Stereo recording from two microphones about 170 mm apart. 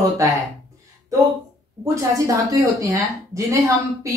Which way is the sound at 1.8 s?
20° right (ahead or behind).